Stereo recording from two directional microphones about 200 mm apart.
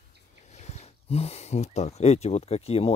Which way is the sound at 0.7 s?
30° left (ahead or behind).